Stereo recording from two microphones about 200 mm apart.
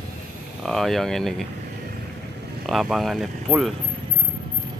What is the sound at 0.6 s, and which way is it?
Speech, centre (ahead or behind).